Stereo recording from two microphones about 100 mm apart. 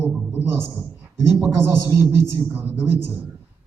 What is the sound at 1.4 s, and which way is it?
A man's voice, 20° right (ahead or behind).